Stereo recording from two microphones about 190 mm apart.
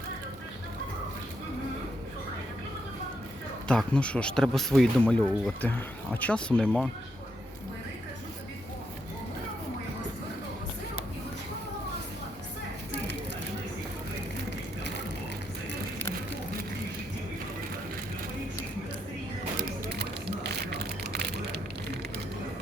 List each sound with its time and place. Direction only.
3.7 s speech: 5° left (ahead or behind)
19.5 s music: 55° right (ahead or behind)
20.4 s a sound: 60° right (ahead or behind)